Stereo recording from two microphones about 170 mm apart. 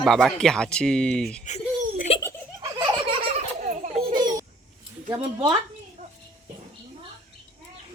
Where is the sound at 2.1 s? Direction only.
35° left (ahead or behind).